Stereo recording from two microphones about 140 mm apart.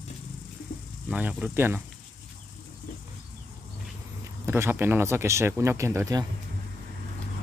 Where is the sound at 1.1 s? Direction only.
10° right (ahead or behind).